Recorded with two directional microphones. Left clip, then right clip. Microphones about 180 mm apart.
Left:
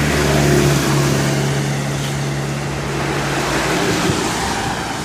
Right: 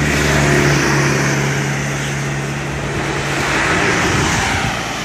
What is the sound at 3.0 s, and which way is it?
Vehicle, 40° left (ahead or behind).